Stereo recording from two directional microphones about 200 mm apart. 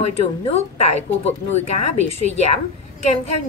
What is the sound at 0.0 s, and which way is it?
A woman's voice, 30° left (ahead or behind).